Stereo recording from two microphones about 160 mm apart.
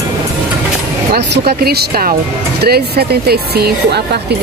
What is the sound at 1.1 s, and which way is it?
Speech, 80° right.